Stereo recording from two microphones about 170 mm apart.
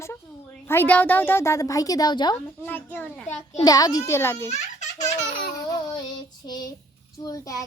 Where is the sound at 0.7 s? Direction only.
10° left (ahead or behind).